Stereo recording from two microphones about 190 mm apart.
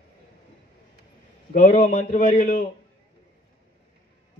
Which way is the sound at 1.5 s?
40° left (ahead or behind).